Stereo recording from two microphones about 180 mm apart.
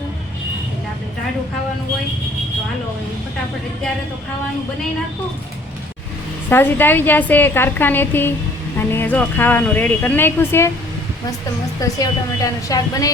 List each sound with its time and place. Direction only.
6.5 s speech: 10° left (ahead or behind)
11.8 s a woman's voice: 20° left (ahead or behind)